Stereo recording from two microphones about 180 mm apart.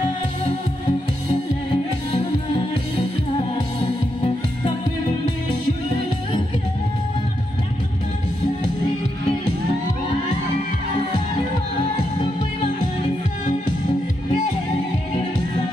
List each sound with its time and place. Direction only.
11.8 s music: 35° left (ahead or behind)